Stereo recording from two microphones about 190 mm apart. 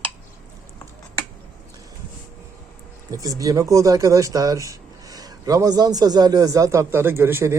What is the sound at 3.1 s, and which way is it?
Speech, 20° right (ahead or behind).